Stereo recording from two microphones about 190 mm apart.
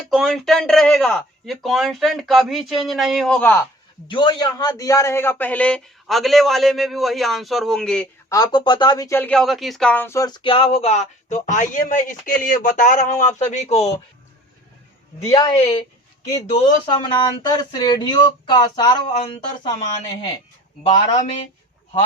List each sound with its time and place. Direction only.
0.1 s a man's voice: centre (ahead or behind)
4.1 s a man's voice: 25° left (ahead or behind); by 8.0 s 5° left (ahead or behind)
8.3 s speech: 20° left (ahead or behind)
15.2 s a woman's voice: 15° left (ahead or behind)
16.5 s speech: 25° left (ahead or behind)
20.9 s speech: 30° left (ahead or behind)